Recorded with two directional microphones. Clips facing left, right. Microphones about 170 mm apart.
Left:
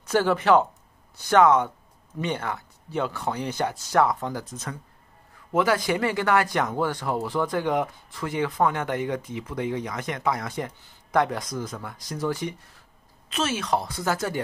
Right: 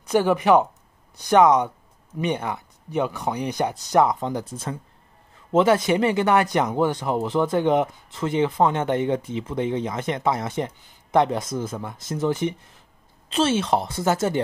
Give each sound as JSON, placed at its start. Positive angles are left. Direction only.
{"t": 0.0, "sound": "speech", "side_deg": -15}